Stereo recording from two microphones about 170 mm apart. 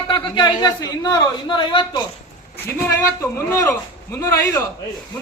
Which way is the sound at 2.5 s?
15° left (ahead or behind).